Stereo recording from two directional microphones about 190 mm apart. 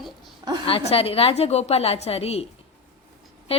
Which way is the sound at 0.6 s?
30° left (ahead or behind).